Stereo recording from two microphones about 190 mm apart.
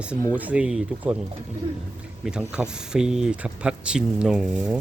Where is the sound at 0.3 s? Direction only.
5° right (ahead or behind).